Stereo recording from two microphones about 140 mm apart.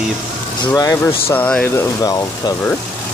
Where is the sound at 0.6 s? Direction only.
25° left (ahead or behind).